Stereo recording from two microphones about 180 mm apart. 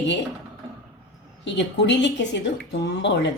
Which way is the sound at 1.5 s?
80° left.